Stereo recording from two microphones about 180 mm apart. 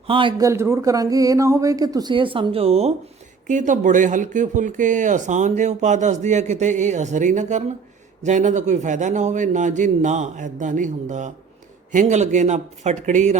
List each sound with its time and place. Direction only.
0.1 s speech: 30° right (ahead or behind)